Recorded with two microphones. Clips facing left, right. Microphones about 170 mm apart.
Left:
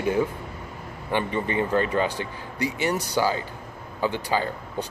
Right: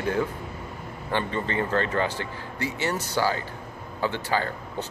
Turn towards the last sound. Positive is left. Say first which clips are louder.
# left 2 dB
turn(degrees=15)  # may be behind; listen again after turning